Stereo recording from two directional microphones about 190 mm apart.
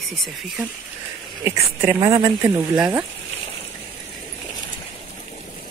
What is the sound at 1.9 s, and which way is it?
Speech, 30° right (ahead or behind).